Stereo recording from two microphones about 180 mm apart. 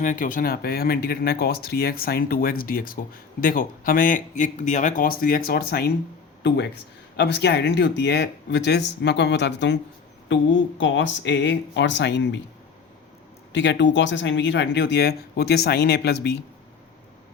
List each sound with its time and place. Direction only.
0.0 s speech: 45° left (ahead or behind)
7.2 s speech: 70° left (ahead or behind)
10.2 s speech: 90° left
13.5 s speech: 80° left